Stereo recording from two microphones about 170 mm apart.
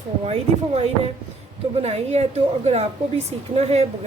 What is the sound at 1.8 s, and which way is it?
A woman's voice, 40° right (ahead or behind).